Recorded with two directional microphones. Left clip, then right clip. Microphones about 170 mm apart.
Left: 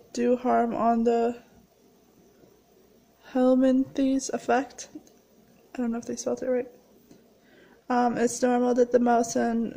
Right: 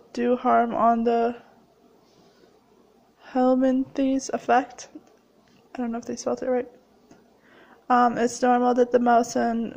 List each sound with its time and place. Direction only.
0.1 s speech: 15° left (ahead or behind)
3.3 s speech: 15° left (ahead or behind)
7.8 s speech: 10° left (ahead or behind)